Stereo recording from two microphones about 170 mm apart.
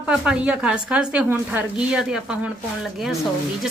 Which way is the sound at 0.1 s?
5° right (ahead or behind).